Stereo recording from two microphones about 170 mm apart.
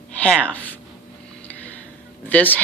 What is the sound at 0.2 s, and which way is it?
Speech, 5° left (ahead or behind).